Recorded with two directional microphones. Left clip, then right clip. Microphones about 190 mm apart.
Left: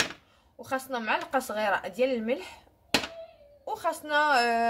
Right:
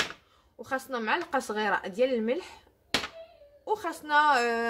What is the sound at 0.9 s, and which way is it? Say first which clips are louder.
A woman's voice: even; 45° right (ahead or behind).